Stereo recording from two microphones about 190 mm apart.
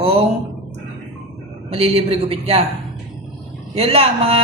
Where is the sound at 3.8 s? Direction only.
30° right (ahead or behind).